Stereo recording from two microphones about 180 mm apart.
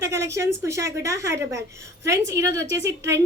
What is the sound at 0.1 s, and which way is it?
A woman's voice, 15° right (ahead or behind).